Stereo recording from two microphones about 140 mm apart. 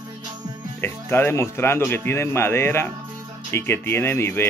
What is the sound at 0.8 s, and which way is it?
Speech, 15° left (ahead or behind).